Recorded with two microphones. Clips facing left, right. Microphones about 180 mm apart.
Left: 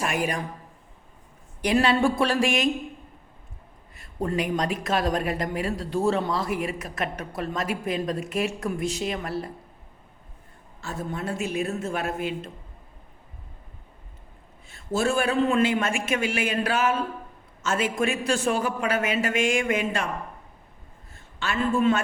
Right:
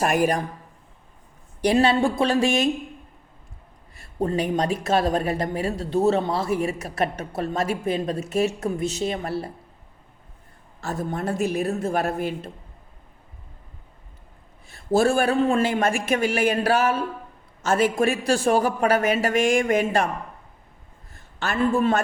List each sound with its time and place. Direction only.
0.0 s speech: 45° right (ahead or behind)
1.6 s speech: 30° right (ahead or behind)
4.2 s speech: 30° right (ahead or behind)
10.8 s a woman's voice: 40° right (ahead or behind)
14.7 s a sound: 35° right (ahead or behind)
15.3 s a woman's voice: 45° right (ahead or behind)
21.3 s a woman's voice: 40° right (ahead or behind)